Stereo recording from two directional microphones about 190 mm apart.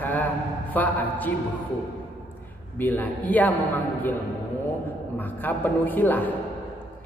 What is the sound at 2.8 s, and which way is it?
Speech, 10° left (ahead or behind).